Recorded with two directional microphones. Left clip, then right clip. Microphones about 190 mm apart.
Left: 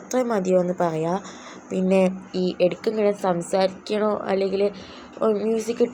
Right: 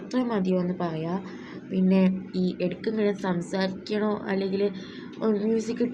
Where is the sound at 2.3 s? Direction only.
15° left (ahead or behind).